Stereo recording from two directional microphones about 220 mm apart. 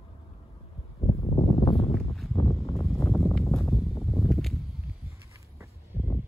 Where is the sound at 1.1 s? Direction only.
25° left (ahead or behind).